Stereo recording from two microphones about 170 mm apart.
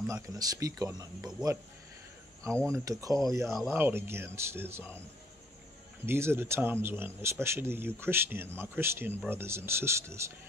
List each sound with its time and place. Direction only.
0.0 s speech: 20° right (ahead or behind)
2.7 s a man's voice: 20° right (ahead or behind)
6.0 s a man's voice: 15° right (ahead or behind)